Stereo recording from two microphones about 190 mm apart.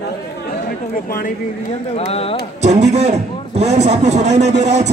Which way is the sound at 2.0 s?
30° left (ahead or behind).